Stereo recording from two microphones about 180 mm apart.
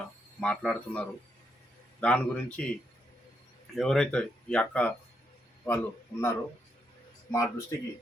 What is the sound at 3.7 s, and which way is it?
Speech, 5° left (ahead or behind).